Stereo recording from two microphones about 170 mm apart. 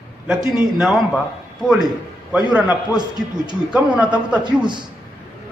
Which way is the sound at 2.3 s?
10° right (ahead or behind).